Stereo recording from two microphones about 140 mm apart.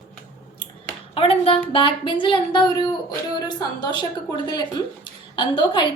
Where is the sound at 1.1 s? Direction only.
40° left (ahead or behind).